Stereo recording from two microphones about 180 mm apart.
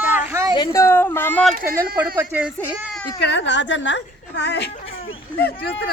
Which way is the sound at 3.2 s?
75° left (ahead or behind).